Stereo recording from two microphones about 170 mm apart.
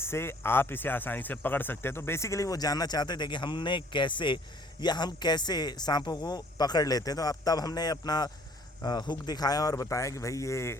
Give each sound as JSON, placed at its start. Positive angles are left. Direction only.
{"t": 0.0, "sound": "speech", "side_deg": 15}